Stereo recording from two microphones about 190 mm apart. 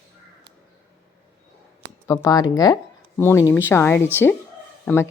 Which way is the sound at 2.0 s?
20° left (ahead or behind).